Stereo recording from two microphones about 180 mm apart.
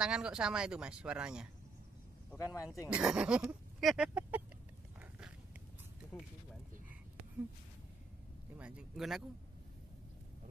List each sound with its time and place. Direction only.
0.0 s speech: 5° right (ahead or behind)
2.3 s speech: 15° left (ahead or behind)
2.9 s speech: 5° right (ahead or behind)
8.5 s speech: 5° right (ahead or behind)